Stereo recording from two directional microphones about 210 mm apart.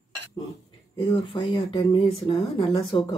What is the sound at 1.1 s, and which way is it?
Speech, 25° left (ahead or behind).